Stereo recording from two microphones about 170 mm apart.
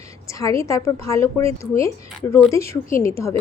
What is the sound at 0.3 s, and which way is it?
A woman's voice, 20° left (ahead or behind).